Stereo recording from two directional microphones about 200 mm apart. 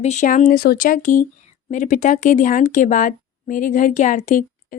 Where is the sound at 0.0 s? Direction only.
35° left (ahead or behind).